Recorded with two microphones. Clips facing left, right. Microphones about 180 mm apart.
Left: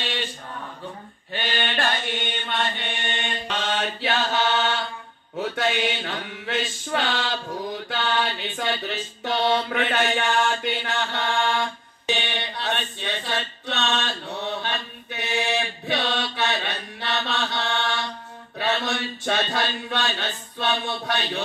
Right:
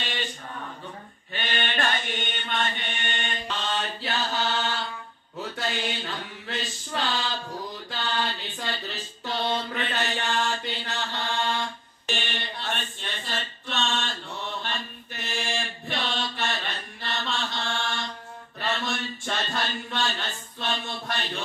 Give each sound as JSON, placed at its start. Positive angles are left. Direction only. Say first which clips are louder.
{"t": 1.3, "sound": "mantra", "louder": "left 3 dB", "side_deg": 35}
{"t": 2.9, "sound": "mantra", "louder": "left 3 dB", "side_deg": 30}
{"t": 3.4, "sound": "mantra", "louder": "left 4 dB", "side_deg": 75}
{"t": 12.4, "sound": "a sound", "louder": "left 5 dB", "side_deg": 75}